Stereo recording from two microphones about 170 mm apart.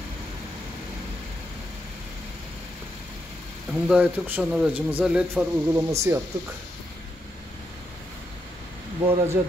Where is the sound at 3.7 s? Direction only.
5° right (ahead or behind).